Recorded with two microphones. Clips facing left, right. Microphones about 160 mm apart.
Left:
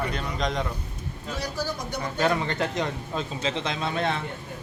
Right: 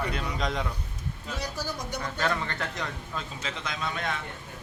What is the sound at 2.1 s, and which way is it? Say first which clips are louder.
A man's voice: left 6 dB; 20° left (ahead or behind).